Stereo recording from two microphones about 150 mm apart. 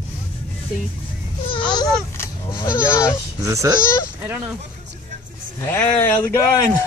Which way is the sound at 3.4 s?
20° right (ahead or behind).